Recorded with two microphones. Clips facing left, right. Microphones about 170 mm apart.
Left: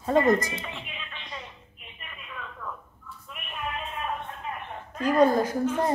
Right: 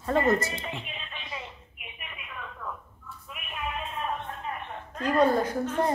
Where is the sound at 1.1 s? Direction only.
5° right (ahead or behind).